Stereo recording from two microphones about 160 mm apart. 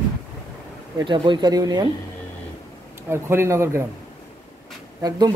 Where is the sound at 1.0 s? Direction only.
30° right (ahead or behind).